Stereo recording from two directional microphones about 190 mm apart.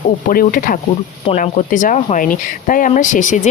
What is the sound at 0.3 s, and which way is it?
Speech, 45° left (ahead or behind).